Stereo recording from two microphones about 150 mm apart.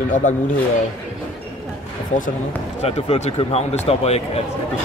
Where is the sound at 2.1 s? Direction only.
55° left (ahead or behind).